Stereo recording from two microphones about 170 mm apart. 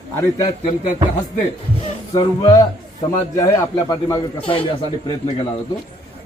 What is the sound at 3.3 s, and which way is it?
A man's voice, 20° left (ahead or behind).